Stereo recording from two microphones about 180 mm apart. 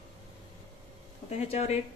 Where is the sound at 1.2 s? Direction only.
35° left (ahead or behind).